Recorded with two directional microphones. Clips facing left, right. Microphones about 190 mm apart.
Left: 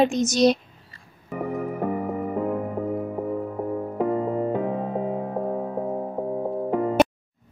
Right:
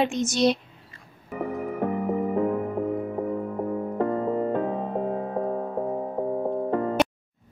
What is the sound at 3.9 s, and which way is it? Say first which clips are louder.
Music: left 1 dB; 10° left (ahead or behind).